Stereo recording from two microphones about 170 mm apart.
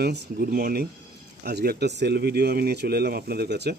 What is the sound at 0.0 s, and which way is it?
Speech, 70° right (ahead or behind).